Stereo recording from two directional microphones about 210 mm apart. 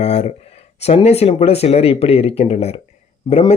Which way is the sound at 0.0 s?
30° left (ahead or behind).